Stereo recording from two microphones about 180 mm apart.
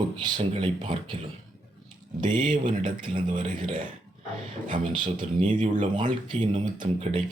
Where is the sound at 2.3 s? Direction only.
45° right (ahead or behind).